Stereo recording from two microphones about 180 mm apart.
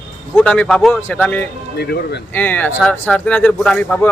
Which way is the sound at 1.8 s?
65° left (ahead or behind).